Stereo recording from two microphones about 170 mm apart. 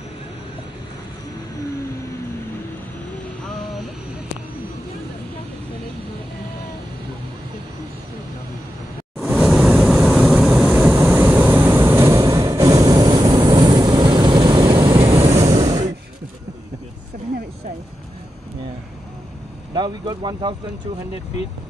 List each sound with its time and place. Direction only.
9.2 s vehicle: 10° right (ahead or behind)
15.0 s vehicle: 35° right (ahead or behind)
15.5 s a sound: 20° right (ahead or behind)
19.7 s speech: 25° right (ahead or behind)